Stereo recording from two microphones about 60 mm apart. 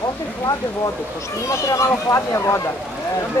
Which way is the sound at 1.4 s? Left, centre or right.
Left.